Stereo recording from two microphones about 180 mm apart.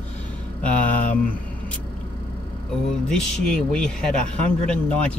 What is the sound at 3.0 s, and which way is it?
A man's voice, 5° left (ahead or behind).